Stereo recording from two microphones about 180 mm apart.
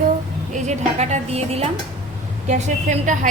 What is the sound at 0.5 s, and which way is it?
A woman's voice, 40° right (ahead or behind).